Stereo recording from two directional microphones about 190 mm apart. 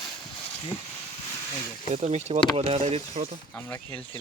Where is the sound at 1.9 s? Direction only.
35° right (ahead or behind).